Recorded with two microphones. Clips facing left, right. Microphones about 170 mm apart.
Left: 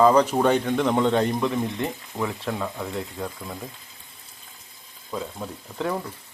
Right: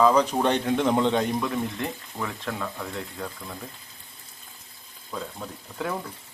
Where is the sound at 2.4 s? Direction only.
10° left (ahead or behind).